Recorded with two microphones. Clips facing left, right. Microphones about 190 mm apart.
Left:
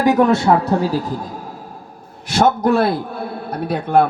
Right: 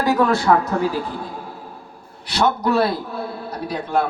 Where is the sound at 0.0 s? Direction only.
20° left (ahead or behind); by 1.3 s 40° left (ahead or behind).